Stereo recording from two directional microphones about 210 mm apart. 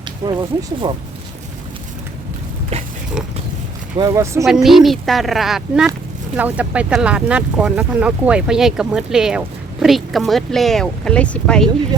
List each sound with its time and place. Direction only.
0.2 s speech: 20° right (ahead or behind)
3.9 s speech: 15° right (ahead or behind)
4.4 s speech: centre (ahead or behind)